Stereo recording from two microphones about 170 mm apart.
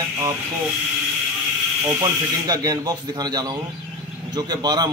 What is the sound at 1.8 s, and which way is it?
Speech, 20° right (ahead or behind).